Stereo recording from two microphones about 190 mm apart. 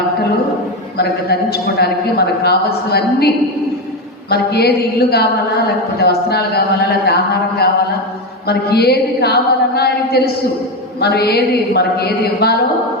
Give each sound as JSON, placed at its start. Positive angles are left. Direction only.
{"t": 0.9, "sound": "a woman's voice", "side_deg": 55}